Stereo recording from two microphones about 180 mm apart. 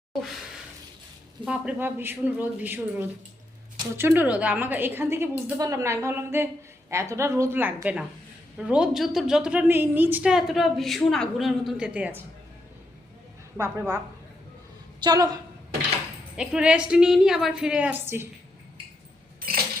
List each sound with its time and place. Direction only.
1.5 s a man's voice: 10° right (ahead or behind)
13.6 s a man's voice: 15° right (ahead or behind)
15.0 s a woman's voice: 20° right (ahead or behind)
16.4 s a woman's voice: 5° right (ahead or behind)